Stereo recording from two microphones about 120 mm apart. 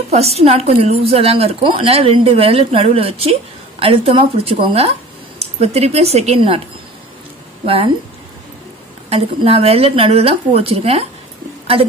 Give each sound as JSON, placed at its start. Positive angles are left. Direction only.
{"t": 0.1, "sound": "a woman's voice", "side_deg": -60}
{"t": 5.4, "sound": "a woman's voice", "side_deg": -60}
{"t": 7.6, "sound": "a woman's voice", "side_deg": -50}
{"t": 9.1, "sound": "a woman's voice", "side_deg": -55}